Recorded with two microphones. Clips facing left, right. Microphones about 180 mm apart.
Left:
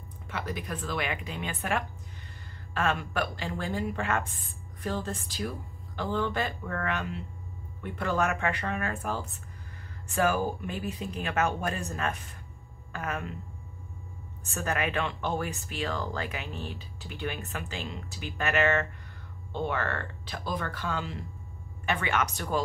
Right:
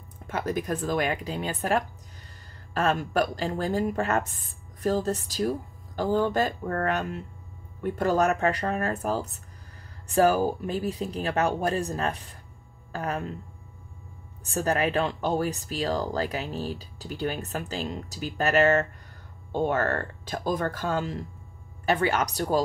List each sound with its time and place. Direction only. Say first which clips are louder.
0.3 s a woman's voice: right 7 dB; 45° right (ahead or behind)
14.4 s a woman's voice: right 6 dB; 35° right (ahead or behind)